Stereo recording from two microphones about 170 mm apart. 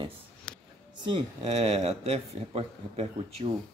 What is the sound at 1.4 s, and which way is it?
Speech, 40° right (ahead or behind).